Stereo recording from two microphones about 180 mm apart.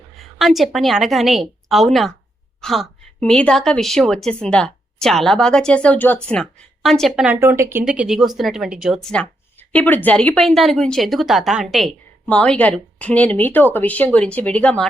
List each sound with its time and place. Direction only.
0.2 s a woman's voice: centre (ahead or behind)
7.3 s a woman's voice: 15° right (ahead or behind); by 14.8 s 5° left (ahead or behind)